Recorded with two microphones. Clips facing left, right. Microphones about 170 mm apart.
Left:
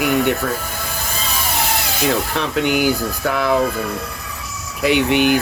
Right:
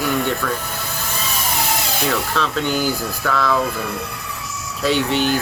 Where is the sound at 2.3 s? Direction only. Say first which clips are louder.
Left 2 dB; 15° left (ahead or behind).